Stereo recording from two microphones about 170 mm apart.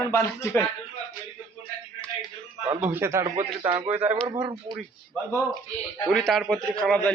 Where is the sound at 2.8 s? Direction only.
15° right (ahead or behind).